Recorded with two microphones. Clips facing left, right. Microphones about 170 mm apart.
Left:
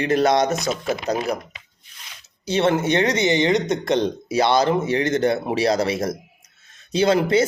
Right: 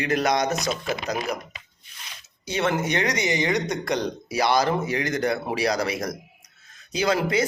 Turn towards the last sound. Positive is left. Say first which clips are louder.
# left 5 dB
turn(degrees=30)  # may be behind; listen again after turning